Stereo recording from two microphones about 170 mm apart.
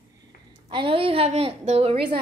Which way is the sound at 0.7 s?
30° right (ahead or behind).